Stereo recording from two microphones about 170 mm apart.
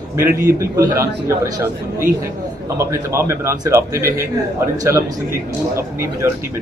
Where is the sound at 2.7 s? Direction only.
15° right (ahead or behind).